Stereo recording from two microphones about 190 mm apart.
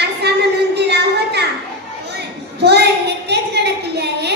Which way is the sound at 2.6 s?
60° right (ahead or behind).